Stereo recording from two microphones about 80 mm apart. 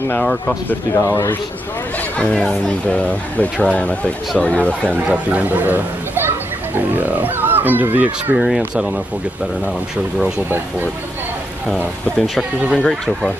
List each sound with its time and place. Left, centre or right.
0.2 s speech: centre
1.0 s a man's voice: left
2.1 s speech: centre
5.0 s speech: centre
8.4 s speech: centre
12.7 s speech: centre